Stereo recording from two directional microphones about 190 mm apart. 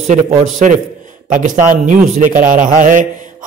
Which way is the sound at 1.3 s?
45° right (ahead or behind).